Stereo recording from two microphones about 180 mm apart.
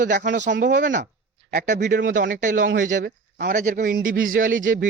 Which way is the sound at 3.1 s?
65° right (ahead or behind).